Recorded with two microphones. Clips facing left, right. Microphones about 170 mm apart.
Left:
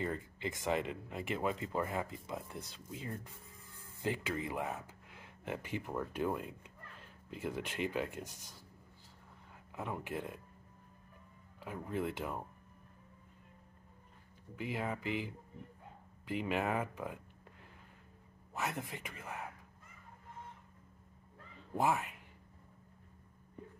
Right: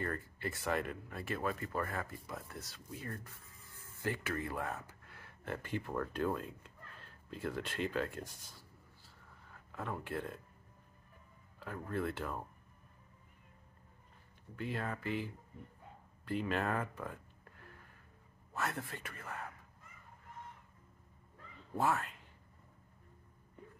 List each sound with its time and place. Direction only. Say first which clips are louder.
0.0 s speech: left 1 dB; 15° left (ahead or behind)
9.7 s speech: even; 15° left (ahead or behind)
11.6 s speech: even; 15° left (ahead or behind)
14.5 s a man's voice: left 1 dB; 15° left (ahead or behind)
21.7 s speech: left 1 dB; 15° left (ahead or behind)